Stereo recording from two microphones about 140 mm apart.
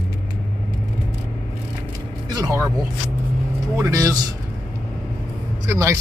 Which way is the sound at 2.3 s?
25° right (ahead or behind).